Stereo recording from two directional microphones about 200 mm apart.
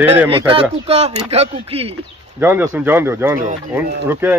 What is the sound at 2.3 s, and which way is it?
A man's voice, 10° right (ahead or behind).